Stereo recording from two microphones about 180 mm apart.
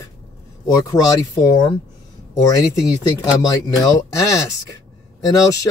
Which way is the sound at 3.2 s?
20° left (ahead or behind).